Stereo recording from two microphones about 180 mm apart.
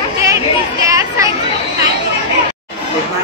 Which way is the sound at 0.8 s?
15° right (ahead or behind).